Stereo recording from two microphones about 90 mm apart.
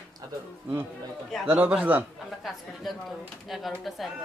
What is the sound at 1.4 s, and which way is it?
Speech, 20° right (ahead or behind).